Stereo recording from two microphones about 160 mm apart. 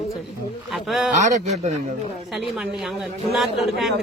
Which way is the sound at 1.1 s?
50° right (ahead or behind).